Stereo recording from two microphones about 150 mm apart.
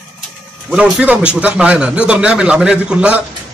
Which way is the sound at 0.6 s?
5° right (ahead or behind).